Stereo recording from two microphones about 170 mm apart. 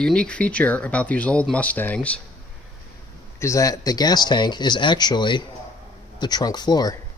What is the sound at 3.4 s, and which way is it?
Speech, 20° left (ahead or behind).